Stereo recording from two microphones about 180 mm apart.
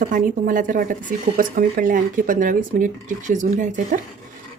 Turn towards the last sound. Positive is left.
turn(degrees=-45)  # may be behind; listen again after turning